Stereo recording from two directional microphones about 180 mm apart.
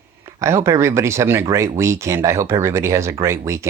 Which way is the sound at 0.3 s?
15° right (ahead or behind).